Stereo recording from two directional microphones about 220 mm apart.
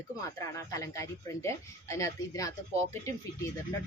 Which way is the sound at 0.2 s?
15° left (ahead or behind).